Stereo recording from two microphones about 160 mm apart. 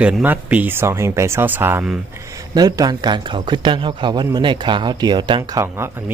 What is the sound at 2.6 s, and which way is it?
A man's voice, 25° right (ahead or behind).